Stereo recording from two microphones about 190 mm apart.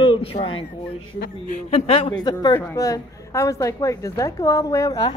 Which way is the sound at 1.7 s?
30° left (ahead or behind).